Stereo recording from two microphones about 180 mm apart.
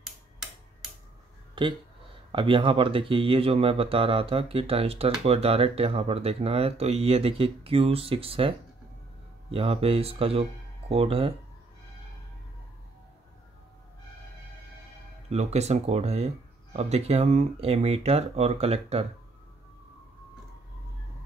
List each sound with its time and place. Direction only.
1.5 s a sound: 25° right (ahead or behind)
2.3 s speech: 30° right (ahead or behind)
15.2 s speech: 35° right (ahead or behind)